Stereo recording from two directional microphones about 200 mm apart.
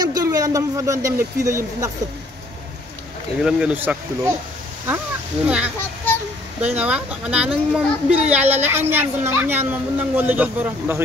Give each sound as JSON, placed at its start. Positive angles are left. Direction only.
{"t": 0.0, "sound": "speech", "side_deg": -20}
{"t": 3.4, "sound": "a child's voice", "side_deg": -5}
{"t": 6.1, "sound": "a sound", "side_deg": 10}
{"t": 6.6, "sound": "a child's voice", "side_deg": -5}